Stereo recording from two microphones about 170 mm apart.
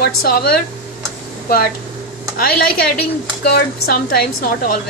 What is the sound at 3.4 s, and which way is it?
A woman's voice, 65° left (ahead or behind).